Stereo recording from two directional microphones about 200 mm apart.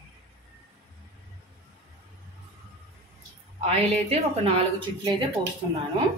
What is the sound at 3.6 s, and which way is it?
A woman's voice, 30° right (ahead or behind).